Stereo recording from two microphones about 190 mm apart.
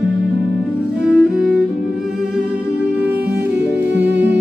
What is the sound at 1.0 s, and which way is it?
Music, 5° right (ahead or behind).